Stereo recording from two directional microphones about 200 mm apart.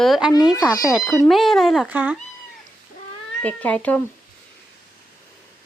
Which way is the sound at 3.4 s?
5° left (ahead or behind).